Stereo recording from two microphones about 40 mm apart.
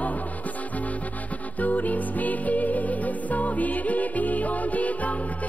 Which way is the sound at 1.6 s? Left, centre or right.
Left.